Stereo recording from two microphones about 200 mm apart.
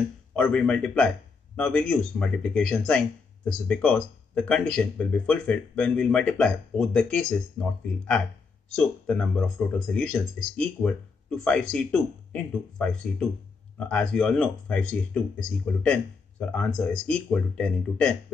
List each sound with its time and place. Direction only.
0.4 s speech: 5° left (ahead or behind)
8.6 s speech: 5° left (ahead or behind)